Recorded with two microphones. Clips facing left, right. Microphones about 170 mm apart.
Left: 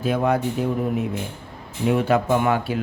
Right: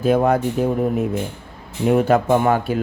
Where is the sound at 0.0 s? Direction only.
45° right (ahead or behind).